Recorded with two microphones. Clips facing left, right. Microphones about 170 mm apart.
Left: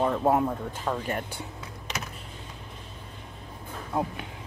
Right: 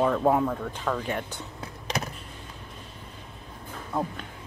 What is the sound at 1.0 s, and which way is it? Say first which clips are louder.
Speech: even; 5° left (ahead or behind).